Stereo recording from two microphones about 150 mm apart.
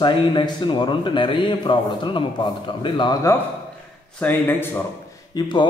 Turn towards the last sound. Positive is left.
turn(degrees=25)  # may be behind; listen again after turning